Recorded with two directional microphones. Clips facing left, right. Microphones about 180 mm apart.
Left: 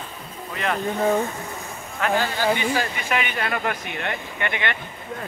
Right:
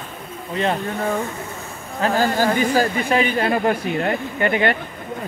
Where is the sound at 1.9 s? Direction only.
35° right (ahead or behind).